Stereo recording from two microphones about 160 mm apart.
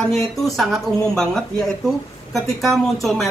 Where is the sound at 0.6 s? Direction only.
Centre (ahead or behind).